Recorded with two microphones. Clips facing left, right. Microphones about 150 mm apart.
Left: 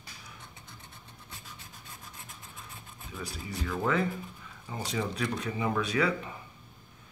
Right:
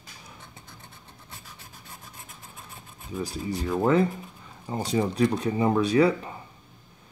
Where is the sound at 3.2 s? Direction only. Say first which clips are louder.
Right 8 dB; 35° right (ahead or behind).